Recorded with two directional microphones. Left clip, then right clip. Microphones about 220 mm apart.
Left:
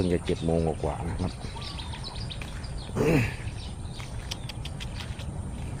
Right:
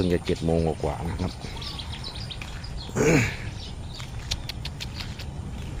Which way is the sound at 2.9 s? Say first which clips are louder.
Right 4 dB; 15° right (ahead or behind).